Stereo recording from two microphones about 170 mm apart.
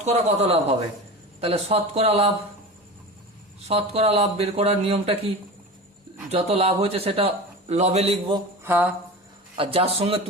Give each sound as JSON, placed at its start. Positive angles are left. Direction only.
{"t": 0.0, "sound": "speech", "side_deg": -40}
{"t": 3.7, "sound": "speech", "side_deg": -35}
{"t": 6.3, "sound": "speech", "side_deg": -35}
{"t": 8.6, "sound": "music", "side_deg": -10}
{"t": 9.6, "sound": "speech", "side_deg": -35}